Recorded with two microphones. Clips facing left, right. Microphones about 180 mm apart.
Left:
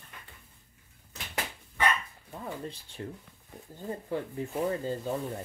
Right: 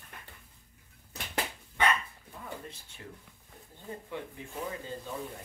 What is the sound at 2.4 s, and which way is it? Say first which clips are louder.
Speech: left 5 dB; 35° left (ahead or behind).